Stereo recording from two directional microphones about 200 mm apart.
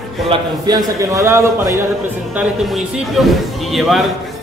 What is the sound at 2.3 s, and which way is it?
Speech, centre (ahead or behind).